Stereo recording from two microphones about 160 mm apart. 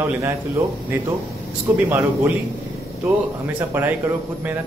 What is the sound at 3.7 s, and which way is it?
Speech, 15° right (ahead or behind).